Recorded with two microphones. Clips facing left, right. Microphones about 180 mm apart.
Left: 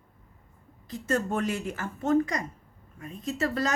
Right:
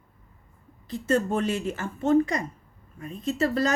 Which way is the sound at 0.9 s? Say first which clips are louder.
Right 4 dB; 30° right (ahead or behind).